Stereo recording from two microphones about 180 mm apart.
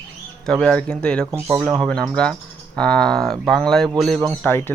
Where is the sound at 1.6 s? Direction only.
5° left (ahead or behind).